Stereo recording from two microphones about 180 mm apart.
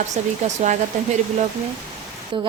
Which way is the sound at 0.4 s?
40° right (ahead or behind).